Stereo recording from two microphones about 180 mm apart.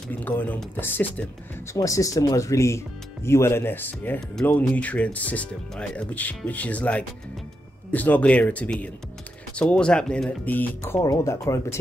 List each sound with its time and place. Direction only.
0.1 s speech: 10° left (ahead or behind)